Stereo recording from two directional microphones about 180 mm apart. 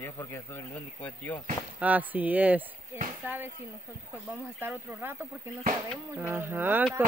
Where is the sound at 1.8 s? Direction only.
10° right (ahead or behind).